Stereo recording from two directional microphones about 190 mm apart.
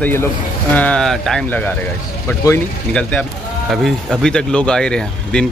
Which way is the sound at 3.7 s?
Centre (ahead or behind).